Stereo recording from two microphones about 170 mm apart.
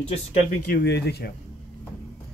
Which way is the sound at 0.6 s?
75° left (ahead or behind).